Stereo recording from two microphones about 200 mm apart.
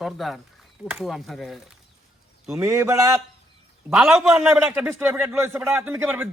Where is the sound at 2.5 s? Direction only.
15° right (ahead or behind).